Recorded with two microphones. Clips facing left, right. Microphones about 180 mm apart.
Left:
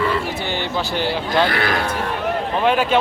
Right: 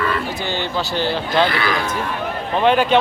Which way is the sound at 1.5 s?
50° left (ahead or behind).